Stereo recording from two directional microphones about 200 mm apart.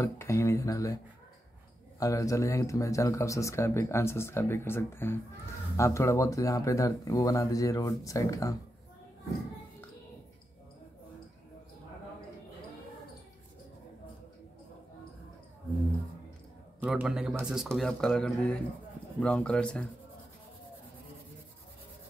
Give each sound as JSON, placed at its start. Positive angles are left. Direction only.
{"t": 0.0, "sound": "speech", "side_deg": 15}
{"t": 2.0, "sound": "speech", "side_deg": 15}
{"t": 16.8, "sound": "speech", "side_deg": -5}